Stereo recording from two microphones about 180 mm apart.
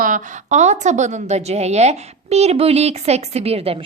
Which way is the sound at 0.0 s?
45° right (ahead or behind).